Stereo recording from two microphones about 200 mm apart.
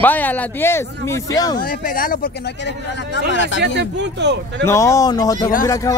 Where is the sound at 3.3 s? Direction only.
65° left (ahead or behind).